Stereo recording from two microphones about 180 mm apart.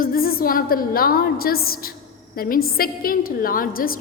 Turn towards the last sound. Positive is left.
turn(degrees=50)  # may be behind; listen again after turning